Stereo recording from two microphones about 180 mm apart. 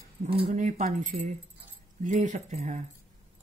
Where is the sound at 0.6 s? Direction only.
45° right (ahead or behind).